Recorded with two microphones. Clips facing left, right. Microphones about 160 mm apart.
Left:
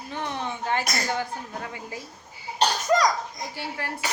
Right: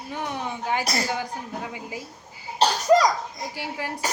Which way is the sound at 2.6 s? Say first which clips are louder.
Right 3 dB; 30° right (ahead or behind).